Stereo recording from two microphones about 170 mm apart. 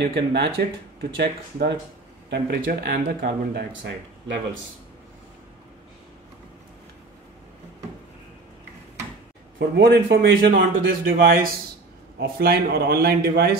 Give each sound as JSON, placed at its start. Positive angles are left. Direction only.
{"t": 0.0, "sound": "speech", "side_deg": -70}
{"t": 9.6, "sound": "a man's voice", "side_deg": -80}